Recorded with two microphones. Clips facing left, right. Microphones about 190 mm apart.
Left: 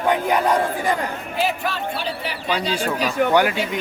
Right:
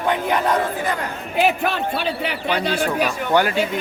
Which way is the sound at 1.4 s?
60° right (ahead or behind).